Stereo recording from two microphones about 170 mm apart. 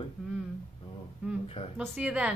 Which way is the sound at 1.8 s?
10° right (ahead or behind).